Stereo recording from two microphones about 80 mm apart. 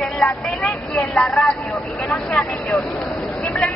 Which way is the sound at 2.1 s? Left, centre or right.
Left.